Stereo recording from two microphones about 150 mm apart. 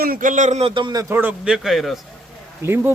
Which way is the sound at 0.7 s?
30° right (ahead or behind).